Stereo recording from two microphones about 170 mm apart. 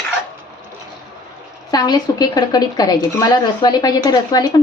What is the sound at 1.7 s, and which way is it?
A woman's voice, 25° left (ahead or behind).